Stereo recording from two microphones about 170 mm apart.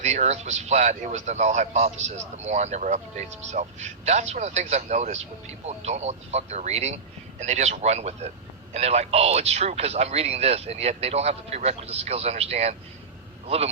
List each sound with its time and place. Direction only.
0.0 s a man's voice: 40° right (ahead or behind)